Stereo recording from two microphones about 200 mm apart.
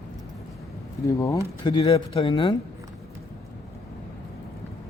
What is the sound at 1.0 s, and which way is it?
A man's voice, 15° left (ahead or behind).